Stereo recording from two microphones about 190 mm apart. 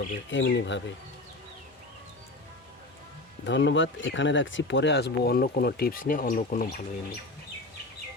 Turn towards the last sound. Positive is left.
turn(degrees=45)  # may be behind; listen again after turning